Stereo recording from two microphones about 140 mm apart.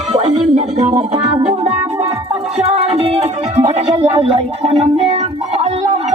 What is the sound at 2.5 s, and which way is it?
Music, 45° right (ahead or behind).